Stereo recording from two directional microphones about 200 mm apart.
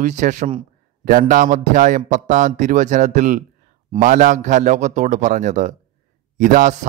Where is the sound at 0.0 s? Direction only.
40° right (ahead or behind).